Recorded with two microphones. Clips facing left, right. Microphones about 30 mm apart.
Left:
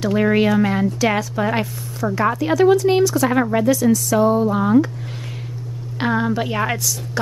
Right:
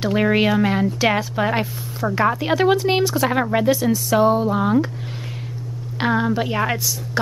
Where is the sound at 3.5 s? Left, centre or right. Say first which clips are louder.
Left 2 dB; right.